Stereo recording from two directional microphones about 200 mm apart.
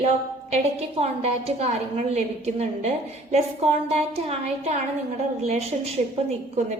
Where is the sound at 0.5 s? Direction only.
30° right (ahead or behind).